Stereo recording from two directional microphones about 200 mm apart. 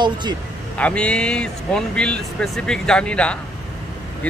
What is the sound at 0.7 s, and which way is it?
Speech, 5° left (ahead or behind).